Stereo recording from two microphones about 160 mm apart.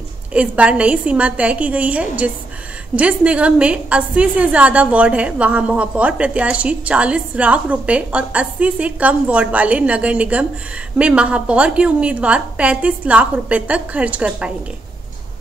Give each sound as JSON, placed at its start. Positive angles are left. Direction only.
{"t": 0.3, "sound": "a woman's voice", "side_deg": -10}